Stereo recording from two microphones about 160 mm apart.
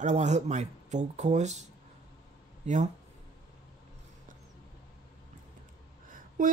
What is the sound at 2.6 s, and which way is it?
Speech, 50° right (ahead or behind).